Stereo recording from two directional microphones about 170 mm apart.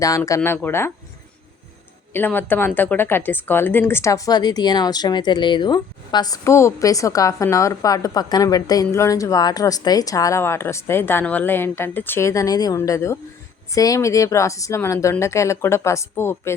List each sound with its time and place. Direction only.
0.3 s a woman's voice: 15° left (ahead or behind)
2.1 s a woman's voice: 10° left (ahead or behind)